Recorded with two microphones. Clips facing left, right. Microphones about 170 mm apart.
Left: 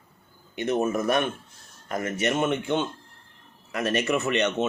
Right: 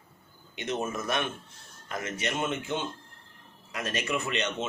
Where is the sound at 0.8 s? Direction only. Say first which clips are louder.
Left 7 dB; 50° left (ahead or behind).